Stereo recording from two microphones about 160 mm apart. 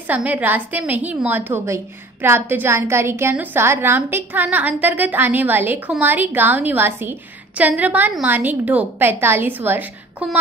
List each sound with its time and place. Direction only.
0.1 s a woman's voice: 10° right (ahead or behind)